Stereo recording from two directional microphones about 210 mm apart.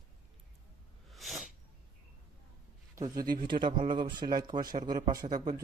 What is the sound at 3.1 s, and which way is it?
Speech, 40° right (ahead or behind).